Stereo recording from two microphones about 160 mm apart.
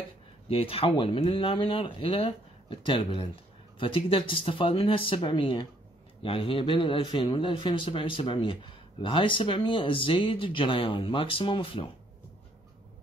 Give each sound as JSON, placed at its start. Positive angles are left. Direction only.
{"t": 0.5, "sound": "speech", "side_deg": 35}